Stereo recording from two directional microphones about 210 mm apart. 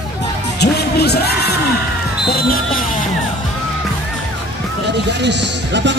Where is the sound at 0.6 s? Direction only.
50° left (ahead or behind).